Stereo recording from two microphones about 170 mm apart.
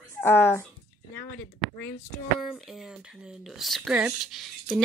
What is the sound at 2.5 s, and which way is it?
Speech, centre (ahead or behind).